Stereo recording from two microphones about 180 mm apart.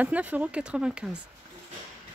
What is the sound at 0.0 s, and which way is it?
Speech, 10° right (ahead or behind).